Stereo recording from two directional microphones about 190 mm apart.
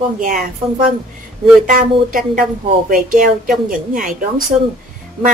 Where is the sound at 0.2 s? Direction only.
50° right (ahead or behind).